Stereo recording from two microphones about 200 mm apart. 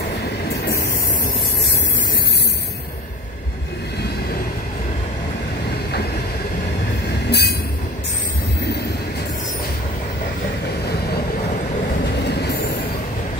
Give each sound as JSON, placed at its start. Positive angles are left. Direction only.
{"t": 7.2, "sound": "train", "side_deg": 55}
{"t": 12.3, "sound": "train", "side_deg": 55}